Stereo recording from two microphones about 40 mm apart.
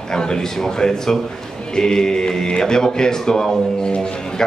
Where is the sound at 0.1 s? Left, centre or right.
Centre.